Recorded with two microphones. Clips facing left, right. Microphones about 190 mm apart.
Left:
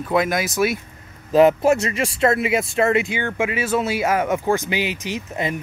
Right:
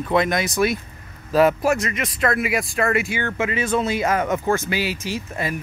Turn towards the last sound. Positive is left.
turn(degrees=20)  # may be behind; listen again after turning